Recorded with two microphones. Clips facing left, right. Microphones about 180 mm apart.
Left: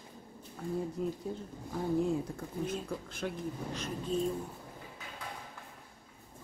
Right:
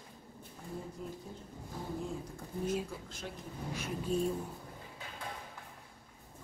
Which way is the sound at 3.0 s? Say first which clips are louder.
Left 7 dB; 60° left (ahead or behind).